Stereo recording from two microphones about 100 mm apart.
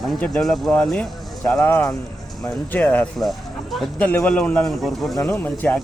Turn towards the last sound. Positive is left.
turn(degrees=15)  # may be behind; listen again after turning